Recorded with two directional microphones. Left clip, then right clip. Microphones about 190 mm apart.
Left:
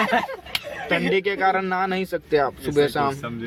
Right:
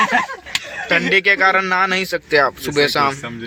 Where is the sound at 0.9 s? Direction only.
10° left (ahead or behind).